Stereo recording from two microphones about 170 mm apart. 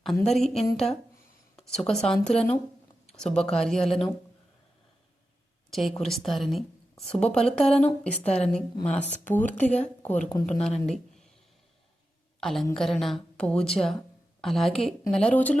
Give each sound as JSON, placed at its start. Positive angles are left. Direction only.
{"t": 0.0, "sound": "a woman's voice", "side_deg": 0}
{"t": 6.0, "sound": "a woman's voice", "side_deg": 0}
{"t": 12.4, "sound": "a woman's voice", "side_deg": 0}